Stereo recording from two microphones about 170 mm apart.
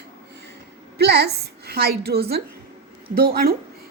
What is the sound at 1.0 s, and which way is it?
A woman's voice, 75° right (ahead or behind).